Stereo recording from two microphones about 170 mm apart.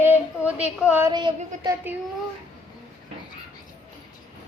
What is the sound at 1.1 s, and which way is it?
Speech, 25° right (ahead or behind).